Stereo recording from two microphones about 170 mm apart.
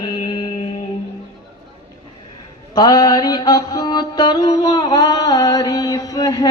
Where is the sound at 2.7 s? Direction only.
25° left (ahead or behind).